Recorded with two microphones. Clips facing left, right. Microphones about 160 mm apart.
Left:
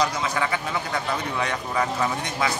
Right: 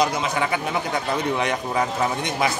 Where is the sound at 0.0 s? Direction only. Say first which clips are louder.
Right 2 dB; 20° right (ahead or behind).